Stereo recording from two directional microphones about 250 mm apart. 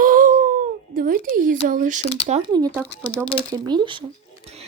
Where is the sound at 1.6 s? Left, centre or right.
Right.